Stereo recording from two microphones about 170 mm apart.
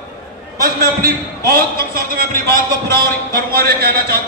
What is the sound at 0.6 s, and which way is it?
Speech, 60° right (ahead or behind).